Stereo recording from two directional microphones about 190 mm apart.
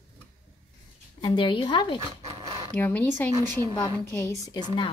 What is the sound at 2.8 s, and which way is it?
A woman's voice, 10° left (ahead or behind).